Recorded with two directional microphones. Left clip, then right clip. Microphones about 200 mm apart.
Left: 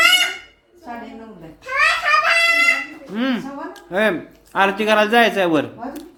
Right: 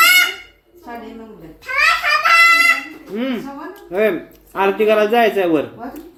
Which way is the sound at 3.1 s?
35° left (ahead or behind).